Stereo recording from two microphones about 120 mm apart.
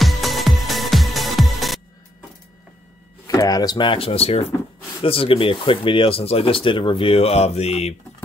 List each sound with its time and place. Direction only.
0.0 s music: centre (ahead or behind)
3.3 s speech: 30° left (ahead or behind); by 7.9 s 60° left (ahead or behind)